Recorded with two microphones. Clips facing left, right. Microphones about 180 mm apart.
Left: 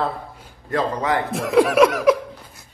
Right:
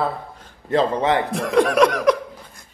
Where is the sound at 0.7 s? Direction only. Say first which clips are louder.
Right 3 dB; 25° right (ahead or behind).